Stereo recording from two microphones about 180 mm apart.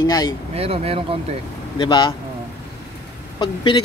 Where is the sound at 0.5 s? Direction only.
35° right (ahead or behind).